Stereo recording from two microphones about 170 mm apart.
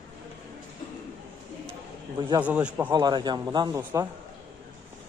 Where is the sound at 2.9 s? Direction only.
25° right (ahead or behind).